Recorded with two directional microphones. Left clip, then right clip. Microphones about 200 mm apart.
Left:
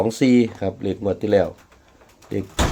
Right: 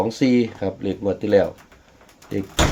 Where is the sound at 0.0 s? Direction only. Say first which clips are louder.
Left 2 dB; 30° left (ahead or behind).